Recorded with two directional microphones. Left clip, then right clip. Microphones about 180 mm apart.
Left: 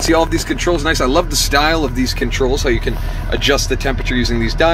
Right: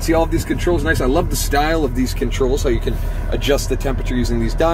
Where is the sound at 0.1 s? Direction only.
5° right (ahead or behind).